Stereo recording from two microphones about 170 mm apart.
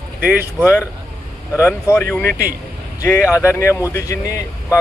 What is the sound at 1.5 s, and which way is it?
Speech, 15° left (ahead or behind).